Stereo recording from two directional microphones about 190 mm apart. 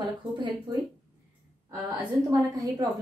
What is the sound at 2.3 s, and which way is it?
Speech, 15° right (ahead or behind).